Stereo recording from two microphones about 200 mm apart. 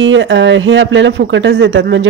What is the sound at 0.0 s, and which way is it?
Speech, 65° right (ahead or behind).